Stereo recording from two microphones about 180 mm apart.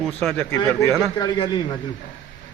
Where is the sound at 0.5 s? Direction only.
15° left (ahead or behind).